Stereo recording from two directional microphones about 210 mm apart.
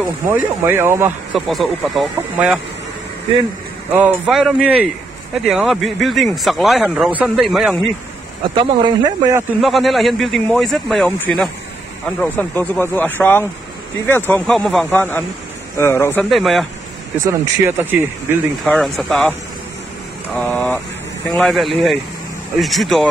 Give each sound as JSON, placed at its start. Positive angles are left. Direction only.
{"t": 0.3, "sound": "speech", "side_deg": -10}
{"t": 1.5, "sound": "speech", "side_deg": 0}
{"t": 3.9, "sound": "speech", "side_deg": -5}
{"t": 8.5, "sound": "speech", "side_deg": -20}
{"t": 9.6, "sound": "speech", "side_deg": 0}
{"t": 16.3, "sound": "speech", "side_deg": 0}
{"t": 17.2, "sound": "speech", "side_deg": -10}
{"t": 18.7, "sound": "speech", "side_deg": 0}
{"t": 20.3, "sound": "speech", "side_deg": 5}